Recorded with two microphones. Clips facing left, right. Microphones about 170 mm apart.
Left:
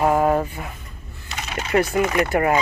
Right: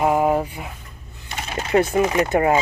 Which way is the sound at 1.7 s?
20° right (ahead or behind).